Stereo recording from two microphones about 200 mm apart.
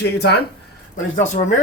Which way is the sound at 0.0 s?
55° left (ahead or behind).